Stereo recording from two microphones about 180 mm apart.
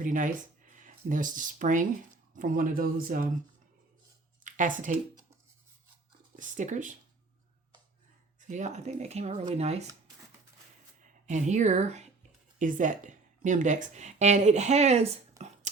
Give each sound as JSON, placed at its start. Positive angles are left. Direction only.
{"t": 0.0, "sound": "a man's voice", "side_deg": -45}
{"t": 4.4, "sound": "speech", "side_deg": -45}
{"t": 6.3, "sound": "a man's voice", "side_deg": -45}
{"t": 8.4, "sound": "speech", "side_deg": -45}
{"t": 11.3, "sound": "speech", "side_deg": -40}